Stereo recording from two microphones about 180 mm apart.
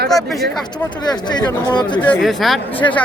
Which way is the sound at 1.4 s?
25° left (ahead or behind).